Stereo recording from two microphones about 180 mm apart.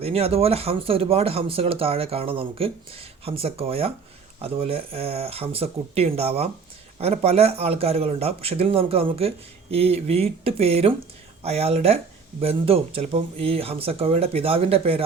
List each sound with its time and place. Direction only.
0.0 s speech: 35° right (ahead or behind)